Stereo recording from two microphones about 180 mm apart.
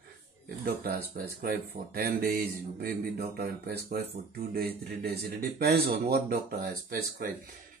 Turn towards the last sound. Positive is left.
turn(degrees=-60)  # may be behind; listen again after turning